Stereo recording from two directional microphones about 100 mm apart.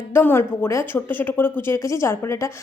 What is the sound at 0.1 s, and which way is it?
Speech, 20° left (ahead or behind).